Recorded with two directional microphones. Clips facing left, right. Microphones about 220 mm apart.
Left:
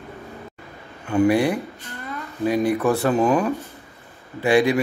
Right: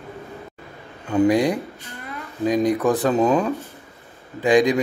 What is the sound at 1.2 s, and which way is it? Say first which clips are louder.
Speech: even; 15° right (ahead or behind).